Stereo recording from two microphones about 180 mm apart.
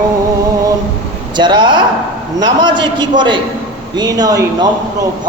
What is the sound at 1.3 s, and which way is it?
Speech, 25° right (ahead or behind).